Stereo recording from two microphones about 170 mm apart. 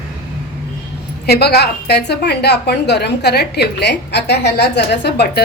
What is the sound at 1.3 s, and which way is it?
A woman's voice, 70° left (ahead or behind).